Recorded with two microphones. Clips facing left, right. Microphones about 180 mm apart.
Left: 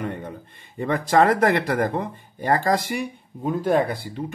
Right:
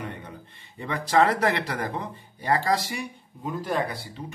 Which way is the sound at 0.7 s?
50° left (ahead or behind).